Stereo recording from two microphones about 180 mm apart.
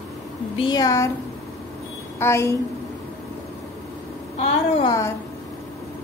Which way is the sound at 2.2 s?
15° left (ahead or behind).